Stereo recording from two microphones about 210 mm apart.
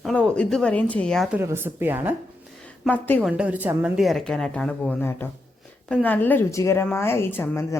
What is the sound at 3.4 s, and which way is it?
A woman's voice, 10° right (ahead or behind).